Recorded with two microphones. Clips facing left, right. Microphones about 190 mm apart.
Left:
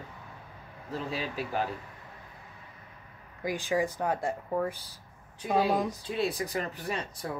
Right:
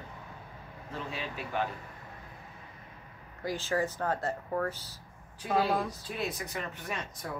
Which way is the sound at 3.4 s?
15° left (ahead or behind).